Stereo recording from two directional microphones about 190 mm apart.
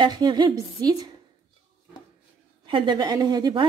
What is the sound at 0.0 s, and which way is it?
Speech, 25° right (ahead or behind).